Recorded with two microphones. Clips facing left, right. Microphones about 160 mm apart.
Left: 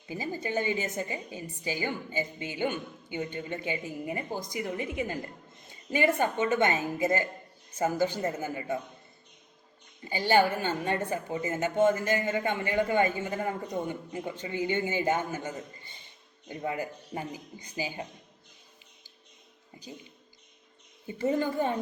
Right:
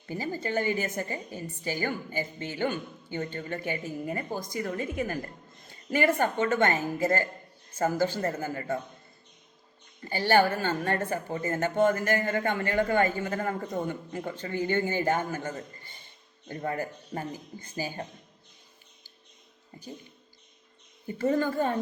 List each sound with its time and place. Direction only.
0.1 s a woman's voice: 15° left (ahead or behind)
10.0 s a woman's voice: 15° left (ahead or behind)
19.7 s a woman's voice: 10° left (ahead or behind)
21.1 s a woman's voice: 20° left (ahead or behind)